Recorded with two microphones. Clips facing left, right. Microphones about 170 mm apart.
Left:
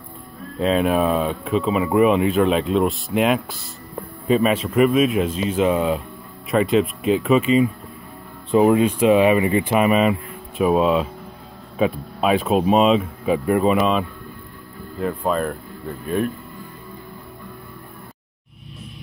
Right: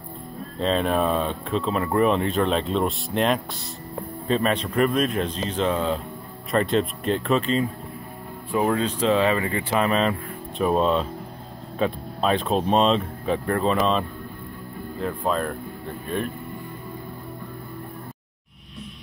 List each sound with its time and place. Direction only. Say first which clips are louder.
0.6 s speech: left 4 dB; 5° left (ahead or behind)
8.5 s speech: left 7 dB; 20° left (ahead or behind); by 15.5 s 5° left (ahead or behind)